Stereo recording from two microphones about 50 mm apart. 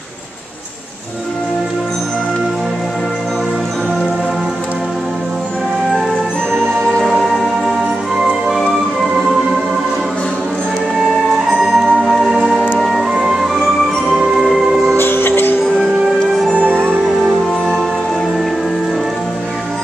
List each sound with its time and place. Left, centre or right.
6.5 s music: centre
7.1 s music: centre
8.2 s organ: centre
9.2 s music: centre
11.0 s music: centre
15.0 s music: left